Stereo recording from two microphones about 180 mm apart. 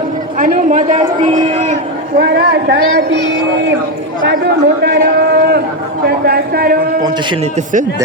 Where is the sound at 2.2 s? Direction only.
65° right (ahead or behind).